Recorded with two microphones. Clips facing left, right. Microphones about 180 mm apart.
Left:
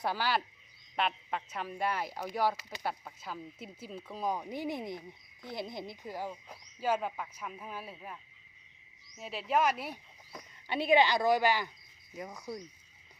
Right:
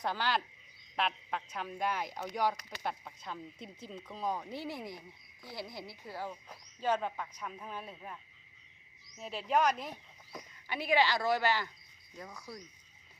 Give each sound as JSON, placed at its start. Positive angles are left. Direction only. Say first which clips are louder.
{"t": 0.0, "sound": "speech", "louder": "left 2 dB", "side_deg": 10}
{"t": 10.7, "sound": "speech", "louder": "left 4 dB", "side_deg": 25}
{"t": 12.1, "sound": "cricket", "louder": "left 6 dB", "side_deg": 20}